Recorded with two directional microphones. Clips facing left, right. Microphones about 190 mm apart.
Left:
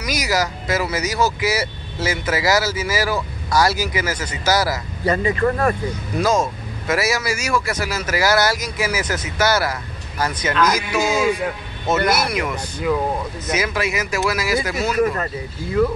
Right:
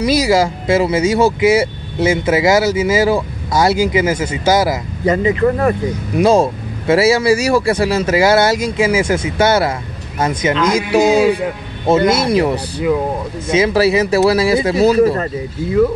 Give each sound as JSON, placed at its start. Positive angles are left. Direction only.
{"t": 0.0, "sound": "speech", "side_deg": -30}
{"t": 6.3, "sound": "speech", "side_deg": -30}